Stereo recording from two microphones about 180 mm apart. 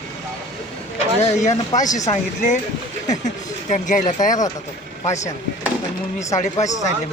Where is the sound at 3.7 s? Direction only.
45° left (ahead or behind).